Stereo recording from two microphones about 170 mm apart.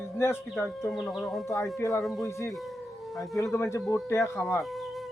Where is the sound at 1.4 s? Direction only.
15° left (ahead or behind).